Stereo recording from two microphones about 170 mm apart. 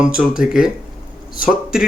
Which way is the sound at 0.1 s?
5° right (ahead or behind).